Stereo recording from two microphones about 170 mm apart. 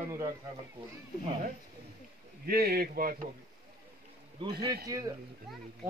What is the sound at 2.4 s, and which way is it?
Speech, 65° right (ahead or behind).